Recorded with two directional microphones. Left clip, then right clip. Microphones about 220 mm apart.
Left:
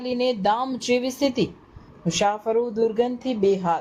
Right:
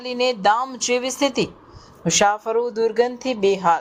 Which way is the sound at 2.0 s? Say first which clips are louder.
Right 4 dB; 20° right (ahead or behind).